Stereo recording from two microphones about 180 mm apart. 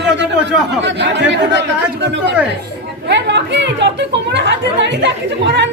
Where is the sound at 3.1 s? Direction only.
75° right (ahead or behind).